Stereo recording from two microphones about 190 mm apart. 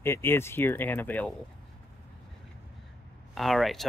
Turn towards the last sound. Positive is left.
turn(degrees=0)  # may be behind; listen again after turning